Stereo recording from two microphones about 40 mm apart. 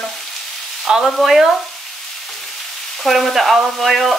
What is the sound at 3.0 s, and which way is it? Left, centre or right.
Speech, centre.